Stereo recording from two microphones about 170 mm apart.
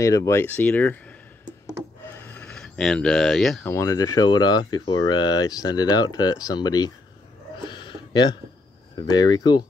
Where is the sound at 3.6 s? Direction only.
15° left (ahead or behind).